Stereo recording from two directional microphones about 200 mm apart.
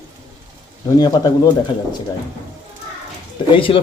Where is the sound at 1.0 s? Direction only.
20° left (ahead or behind).